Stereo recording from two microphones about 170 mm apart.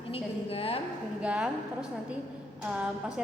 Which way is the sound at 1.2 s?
5° right (ahead or behind).